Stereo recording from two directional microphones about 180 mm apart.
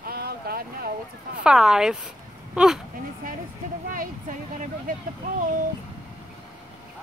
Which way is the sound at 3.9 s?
45° right (ahead or behind).